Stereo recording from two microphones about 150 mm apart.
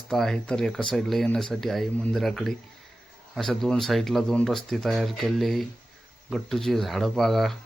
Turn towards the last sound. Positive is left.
turn(degrees=0)  # may be behind; listen again after turning